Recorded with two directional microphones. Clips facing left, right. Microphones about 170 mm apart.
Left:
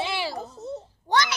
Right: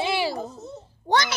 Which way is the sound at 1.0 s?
25° right (ahead or behind).